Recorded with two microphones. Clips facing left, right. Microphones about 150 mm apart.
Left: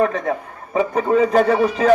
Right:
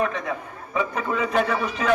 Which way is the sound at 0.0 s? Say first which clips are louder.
Left 6 dB; 40° left (ahead or behind).